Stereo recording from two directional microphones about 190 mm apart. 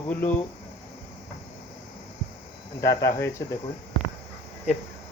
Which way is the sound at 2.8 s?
15° left (ahead or behind).